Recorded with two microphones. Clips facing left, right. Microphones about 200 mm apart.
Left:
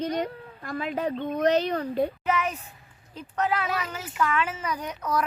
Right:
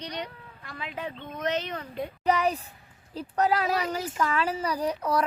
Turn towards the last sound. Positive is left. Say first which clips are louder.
# right 2 dB
turn(degrees=-30)  # may be behind; listen again after turning